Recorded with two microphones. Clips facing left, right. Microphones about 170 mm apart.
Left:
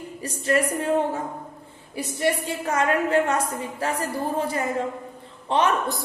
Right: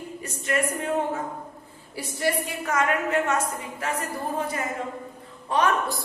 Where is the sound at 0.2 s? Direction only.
35° left (ahead or behind).